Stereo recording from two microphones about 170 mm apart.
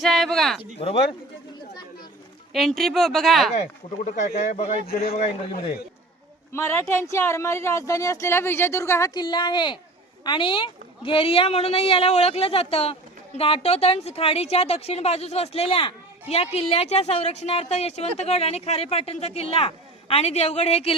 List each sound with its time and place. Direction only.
0.0 s a sound: centre (ahead or behind)
0.8 s a woman's voice: 35° left (ahead or behind)
2.5 s speech: centre (ahead or behind)
4.0 s a woman's voice: 45° left (ahead or behind)
4.9 s a man's voice: 65° left (ahead or behind)
6.5 s a woman's voice: 15° left (ahead or behind); by 20.9 s 35° left (ahead or behind)